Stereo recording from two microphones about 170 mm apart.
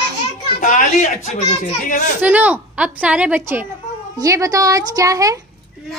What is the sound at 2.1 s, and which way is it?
A woman's voice, 10° right (ahead or behind).